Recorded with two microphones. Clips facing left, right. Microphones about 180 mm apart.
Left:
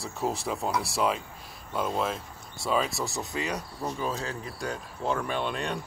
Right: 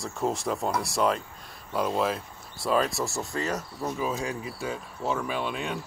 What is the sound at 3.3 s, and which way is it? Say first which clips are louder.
Speech: right 2 dB; 20° left (ahead or behind).